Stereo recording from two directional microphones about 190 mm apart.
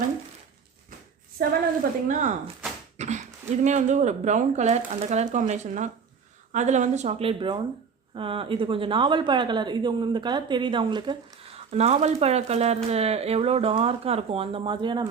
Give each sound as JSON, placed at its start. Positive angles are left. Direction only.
{"t": 1.4, "sound": "a woman's voice", "side_deg": -55}
{"t": 3.0, "sound": "a woman's voice", "side_deg": -40}